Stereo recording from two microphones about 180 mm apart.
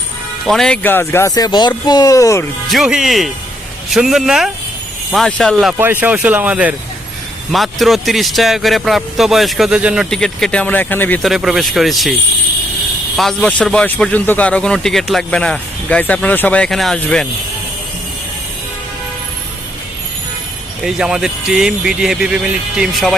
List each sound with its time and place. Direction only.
0.4 s speech: centre (ahead or behind)
2.6 s a man's voice: centre (ahead or behind)
5.7 s a man's voice: 10° right (ahead or behind); by 11.2 s 10° left (ahead or behind)
11.2 s a man's voice: centre (ahead or behind)
13.1 s a man's voice: centre (ahead or behind)
20.8 s a man's voice: 5° right (ahead or behind)